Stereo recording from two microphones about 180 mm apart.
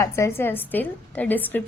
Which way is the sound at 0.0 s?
15° left (ahead or behind).